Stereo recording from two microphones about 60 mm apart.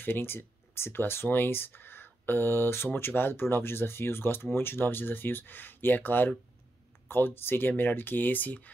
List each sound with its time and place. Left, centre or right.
0.0 s speech: left